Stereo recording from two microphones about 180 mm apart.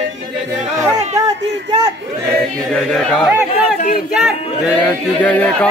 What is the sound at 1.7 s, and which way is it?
Speech, 20° right (ahead or behind).